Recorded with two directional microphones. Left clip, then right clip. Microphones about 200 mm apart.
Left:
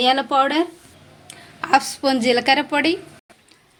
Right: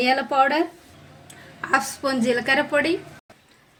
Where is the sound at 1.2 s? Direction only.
35° left (ahead or behind).